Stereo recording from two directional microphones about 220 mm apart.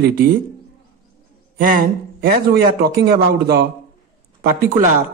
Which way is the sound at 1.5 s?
40° right (ahead or behind).